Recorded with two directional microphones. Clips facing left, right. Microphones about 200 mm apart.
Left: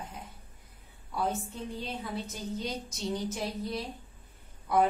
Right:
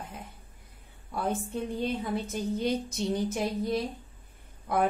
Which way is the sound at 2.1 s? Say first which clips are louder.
Right 6 dB; 55° right (ahead or behind).